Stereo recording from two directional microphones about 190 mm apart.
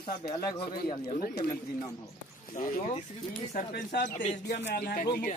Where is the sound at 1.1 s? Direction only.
50° left (ahead or behind).